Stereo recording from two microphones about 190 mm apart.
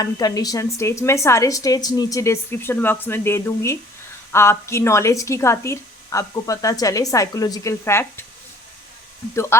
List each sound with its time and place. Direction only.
0.0 s a woman's voice: 20° left (ahead or behind)
9.3 s a woman's voice: 15° left (ahead or behind)